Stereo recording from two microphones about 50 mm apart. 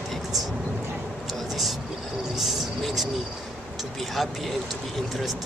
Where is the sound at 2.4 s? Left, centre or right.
Centre.